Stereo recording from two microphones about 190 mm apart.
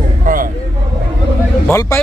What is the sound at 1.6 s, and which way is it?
Speech, 10° left (ahead or behind).